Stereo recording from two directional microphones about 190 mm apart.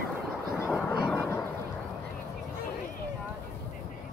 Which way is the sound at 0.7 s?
15° left (ahead or behind).